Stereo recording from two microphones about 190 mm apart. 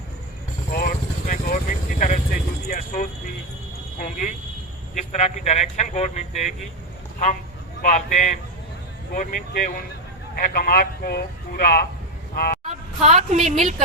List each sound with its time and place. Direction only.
0.7 s speech: 50° left (ahead or behind)
7.8 s speech: 45° left (ahead or behind)
12.6 s a woman's voice: 40° right (ahead or behind)